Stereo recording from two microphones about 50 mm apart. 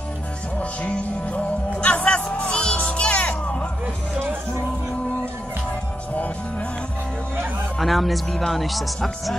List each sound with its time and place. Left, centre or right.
0.6 s music: left
7.8 s speech: centre